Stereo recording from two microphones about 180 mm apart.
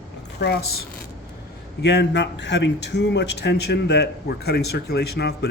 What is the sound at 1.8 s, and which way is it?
A man's voice, 70° left (ahead or behind).